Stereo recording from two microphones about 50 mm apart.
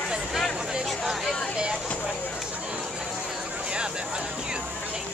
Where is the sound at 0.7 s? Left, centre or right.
Centre.